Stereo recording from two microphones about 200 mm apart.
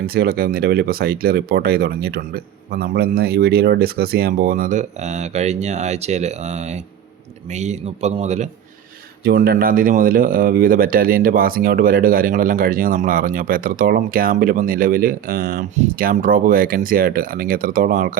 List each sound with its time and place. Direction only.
0.0 s a man's voice: 50° right (ahead or behind)
9.2 s speech: 50° right (ahead or behind)